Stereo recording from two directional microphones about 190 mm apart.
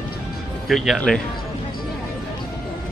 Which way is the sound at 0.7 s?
Centre (ahead or behind).